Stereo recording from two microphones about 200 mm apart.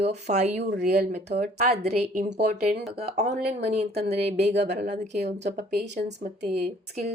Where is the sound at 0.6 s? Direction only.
60° right (ahead or behind).